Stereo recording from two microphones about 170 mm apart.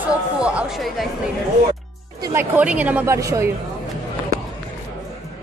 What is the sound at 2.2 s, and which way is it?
A woman's voice, 10° right (ahead or behind).